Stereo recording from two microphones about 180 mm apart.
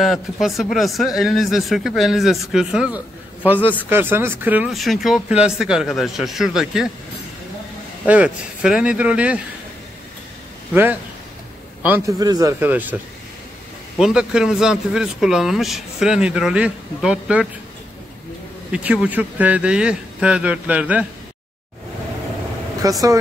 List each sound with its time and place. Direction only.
0.0 s speech: centre (ahead or behind)
8.0 s speech: 5° right (ahead or behind)
10.7 s a man's voice: 10° right (ahead or behind)
13.9 s speech: 5° right (ahead or behind)
18.7 s speech: 5° right (ahead or behind)
22.8 s speech: 20° right (ahead or behind)